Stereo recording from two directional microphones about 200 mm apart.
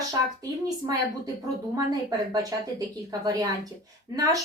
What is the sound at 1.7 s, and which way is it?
Speech, 20° right (ahead or behind).